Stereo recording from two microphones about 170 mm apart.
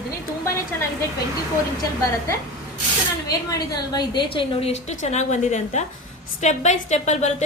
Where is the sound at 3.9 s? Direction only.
25° left (ahead or behind).